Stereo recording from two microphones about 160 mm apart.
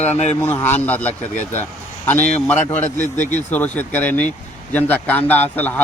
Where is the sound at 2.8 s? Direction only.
50° left (ahead or behind).